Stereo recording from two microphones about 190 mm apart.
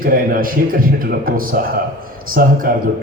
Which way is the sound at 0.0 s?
50° right (ahead or behind).